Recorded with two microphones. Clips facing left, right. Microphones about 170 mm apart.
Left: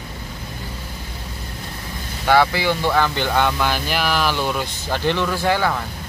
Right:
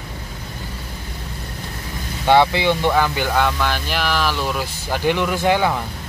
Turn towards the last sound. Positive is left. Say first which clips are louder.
# right 2 dB
turn(degrees=-15)  # may be behind; listen again after turning